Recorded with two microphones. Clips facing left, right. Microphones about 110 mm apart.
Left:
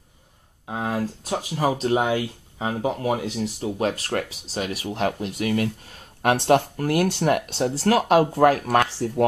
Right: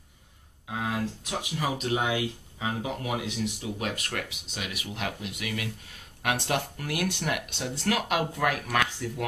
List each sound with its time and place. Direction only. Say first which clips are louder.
0.7 s speech: left 5 dB; 35° left (ahead or behind)